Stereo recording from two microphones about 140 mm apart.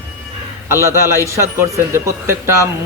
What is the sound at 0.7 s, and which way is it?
A man's voice, 20° right (ahead or behind).